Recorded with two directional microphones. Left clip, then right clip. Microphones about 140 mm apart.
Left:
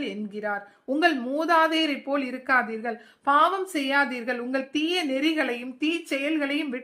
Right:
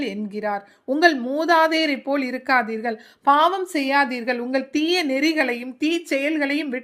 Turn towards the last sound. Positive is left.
turn(degrees=-25)  # may be behind; listen again after turning